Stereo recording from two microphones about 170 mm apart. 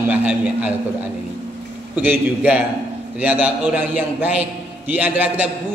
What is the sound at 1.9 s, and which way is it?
A man's voice, 10° right (ahead or behind).